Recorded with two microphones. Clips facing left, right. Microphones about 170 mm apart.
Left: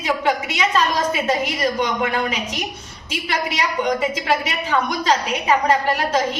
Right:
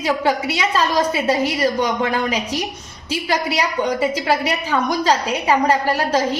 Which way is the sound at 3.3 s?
35° right (ahead or behind).